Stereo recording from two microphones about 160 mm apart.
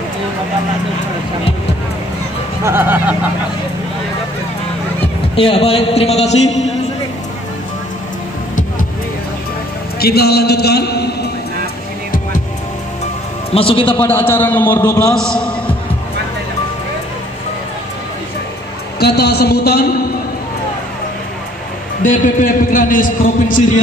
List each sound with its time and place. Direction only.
2.6 s speech: 15° right (ahead or behind)
5.3 s a man's voice: 35° left (ahead or behind)
9.9 s a man's voice: 80° left
13.5 s a man's voice: 35° left (ahead or behind)
13.9 s a man's voice: 15° left (ahead or behind)
18.9 s a man's voice: 90° left
22.0 s a man's voice: 55° left (ahead or behind)